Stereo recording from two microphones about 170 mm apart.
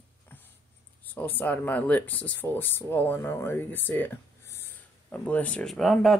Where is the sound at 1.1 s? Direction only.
10° left (ahead or behind).